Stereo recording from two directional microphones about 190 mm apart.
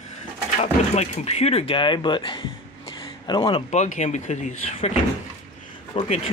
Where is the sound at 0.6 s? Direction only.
35° left (ahead or behind).